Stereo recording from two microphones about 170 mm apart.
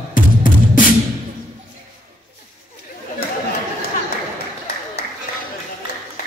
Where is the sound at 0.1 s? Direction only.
50° left (ahead or behind).